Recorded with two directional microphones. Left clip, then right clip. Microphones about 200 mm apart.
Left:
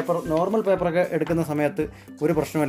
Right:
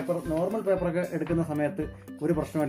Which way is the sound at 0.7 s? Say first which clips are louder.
Left 6 dB; 50° left (ahead or behind).